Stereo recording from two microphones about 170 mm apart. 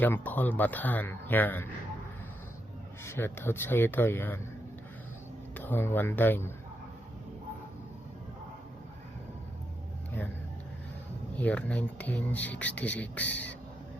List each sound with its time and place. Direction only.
0.0 s speech: 10° left (ahead or behind)
3.0 s speech: 15° left (ahead or behind)
5.5 s speech: 10° left (ahead or behind)
11.3 s speech: 10° left (ahead or behind)